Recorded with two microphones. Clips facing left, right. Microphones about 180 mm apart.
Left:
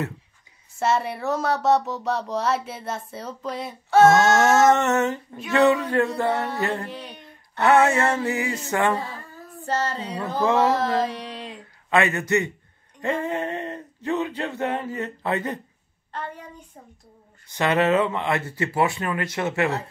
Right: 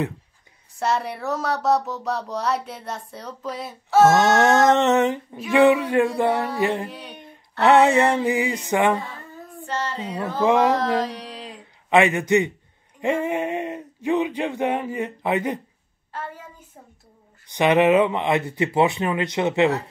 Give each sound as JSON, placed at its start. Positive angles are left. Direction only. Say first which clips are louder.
{"t": 0.7, "sound": "speech", "louder": "left 1 dB", "side_deg": 0}
{"t": 4.4, "sound": "speech", "louder": "right 1 dB", "side_deg": -20}
{"t": 6.1, "sound": "mantra", "louder": "right 3 dB", "side_deg": -20}
{"t": 6.9, "sound": "a sound", "louder": "left 2 dB", "side_deg": 0}
{"t": 7.6, "sound": "speech", "louder": "right 3 dB", "side_deg": -20}
{"t": 9.7, "sound": "female singing", "louder": "left 3 dB", "side_deg": 40}
{"t": 10.4, "sound": "speech", "louder": "right 2 dB", "side_deg": -15}
{"t": 10.7, "sound": "music", "louder": "right 1 dB", "side_deg": 0}
{"t": 11.9, "sound": "speech", "louder": "right 4 dB", "side_deg": -15}
{"t": 13.0, "sound": "a sound", "louder": "right 3 dB", "side_deg": -15}
{"t": 17.5, "sound": "speech", "louder": "right 4 dB", "side_deg": -15}